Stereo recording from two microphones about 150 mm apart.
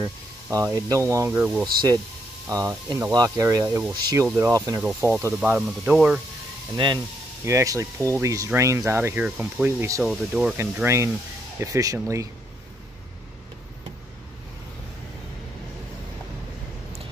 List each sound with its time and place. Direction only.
0.0 s speech: 20° right (ahead or behind)
4.8 s speech: 5° right (ahead or behind)
7.4 s speech: 20° right (ahead or behind)
10.0 s speech: 5° right (ahead or behind)
10.6 s speech: 15° right (ahead or behind)